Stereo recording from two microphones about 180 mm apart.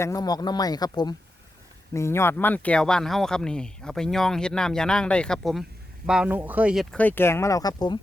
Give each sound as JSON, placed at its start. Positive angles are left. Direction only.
{"t": 0.0, "sound": "speech", "side_deg": 20}
{"t": 6.9, "sound": "speech", "side_deg": 10}